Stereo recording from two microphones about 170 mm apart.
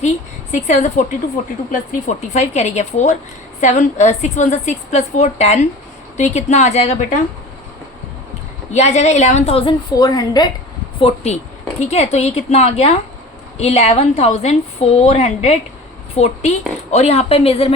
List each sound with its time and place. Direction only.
0.5 s a woman's voice: 45° left (ahead or behind)
8.7 s a woman's voice: 40° left (ahead or behind)
9.9 s a woman's voice: 20° left (ahead or behind)
11.0 s a woman's voice: 40° left (ahead or behind)